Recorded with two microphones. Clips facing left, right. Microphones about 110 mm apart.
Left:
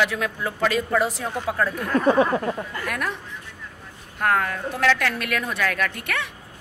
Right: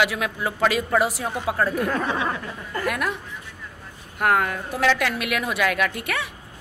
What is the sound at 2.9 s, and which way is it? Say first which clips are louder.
Speech: right 4 dB; 5° right (ahead or behind).